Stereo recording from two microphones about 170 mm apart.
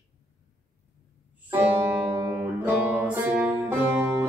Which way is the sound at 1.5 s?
15° right (ahead or behind).